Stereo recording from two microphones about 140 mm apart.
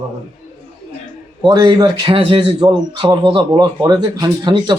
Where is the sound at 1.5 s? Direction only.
30° right (ahead or behind).